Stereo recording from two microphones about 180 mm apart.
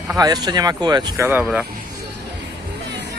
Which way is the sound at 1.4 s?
5° right (ahead or behind).